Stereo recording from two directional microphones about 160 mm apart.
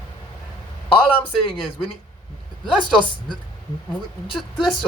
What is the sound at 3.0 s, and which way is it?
Speech, 30° left (ahead or behind).